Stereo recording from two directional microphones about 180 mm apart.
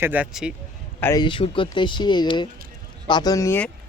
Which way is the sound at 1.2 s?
30° left (ahead or behind).